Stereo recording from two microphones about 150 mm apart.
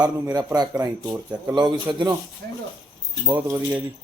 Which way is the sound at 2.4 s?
65° right (ahead or behind).